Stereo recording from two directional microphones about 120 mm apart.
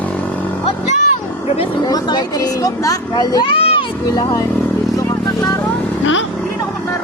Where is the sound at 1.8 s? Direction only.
35° left (ahead or behind).